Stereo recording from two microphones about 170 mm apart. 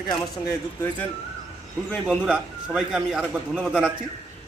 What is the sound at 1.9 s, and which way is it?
A man's voice, 5° right (ahead or behind).